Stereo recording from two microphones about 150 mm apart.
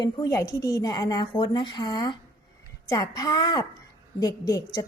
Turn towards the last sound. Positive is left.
turn(degrees=25)  # may be behind; listen again after turning